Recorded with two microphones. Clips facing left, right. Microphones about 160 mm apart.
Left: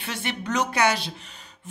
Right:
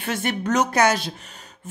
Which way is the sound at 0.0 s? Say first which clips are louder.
Right 6 dB; 45° right (ahead or behind).